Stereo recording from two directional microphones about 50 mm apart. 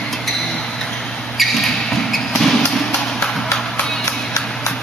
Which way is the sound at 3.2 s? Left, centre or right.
Centre.